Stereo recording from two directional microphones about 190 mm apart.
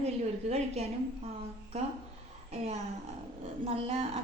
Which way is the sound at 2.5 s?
35° right (ahead or behind).